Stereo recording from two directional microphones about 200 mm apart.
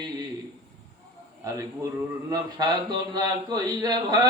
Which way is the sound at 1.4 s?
15° right (ahead or behind).